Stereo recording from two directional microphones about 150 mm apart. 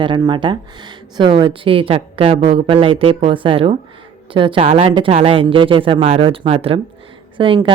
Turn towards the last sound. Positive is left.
turn(degrees=-35)  # may be behind; listen again after turning